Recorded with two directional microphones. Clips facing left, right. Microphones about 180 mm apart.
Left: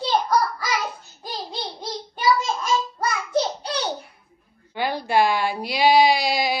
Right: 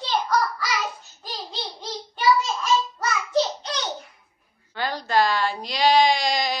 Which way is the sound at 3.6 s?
30° left (ahead or behind).